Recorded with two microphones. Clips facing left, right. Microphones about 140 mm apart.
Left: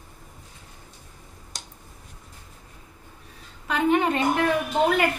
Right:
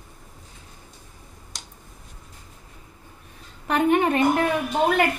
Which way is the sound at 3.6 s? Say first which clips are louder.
Right 2 dB; 50° right (ahead or behind).